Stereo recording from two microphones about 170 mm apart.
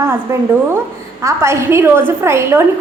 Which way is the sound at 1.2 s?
15° right (ahead or behind).